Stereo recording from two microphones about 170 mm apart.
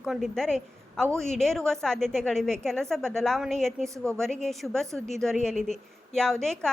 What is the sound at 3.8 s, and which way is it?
Speech, 20° right (ahead or behind).